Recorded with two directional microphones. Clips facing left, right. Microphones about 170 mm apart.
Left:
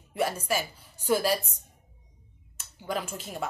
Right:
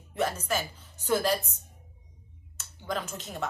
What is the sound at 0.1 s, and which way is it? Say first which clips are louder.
A woman's voice: left 1 dB; 10° left (ahead or behind).